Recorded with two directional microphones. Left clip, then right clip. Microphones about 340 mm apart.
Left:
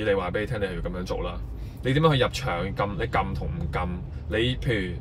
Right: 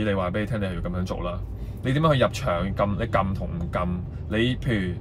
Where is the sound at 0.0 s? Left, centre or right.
Centre.